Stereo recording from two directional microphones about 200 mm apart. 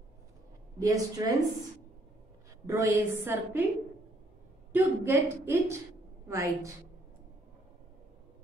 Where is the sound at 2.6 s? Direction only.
15° right (ahead or behind).